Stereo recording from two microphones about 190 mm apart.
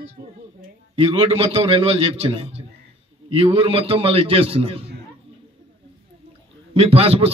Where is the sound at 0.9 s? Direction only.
30° right (ahead or behind).